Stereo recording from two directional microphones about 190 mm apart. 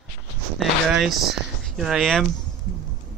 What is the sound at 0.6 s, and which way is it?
Speech, centre (ahead or behind).